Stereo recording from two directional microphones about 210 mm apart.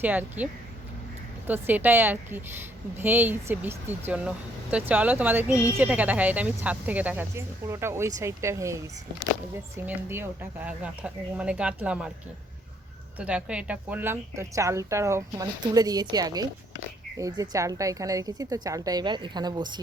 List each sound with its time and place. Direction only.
0.0 s speech: 10° right (ahead or behind)
1.5 s speech: 10° right (ahead or behind)
13.1 s speech: 5° right (ahead or behind)